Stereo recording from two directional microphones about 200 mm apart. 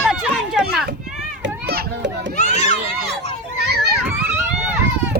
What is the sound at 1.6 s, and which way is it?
Children playing, 50° right (ahead or behind).